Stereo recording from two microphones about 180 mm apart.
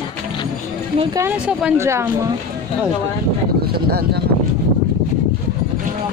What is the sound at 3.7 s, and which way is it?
Speech, 60° right (ahead or behind).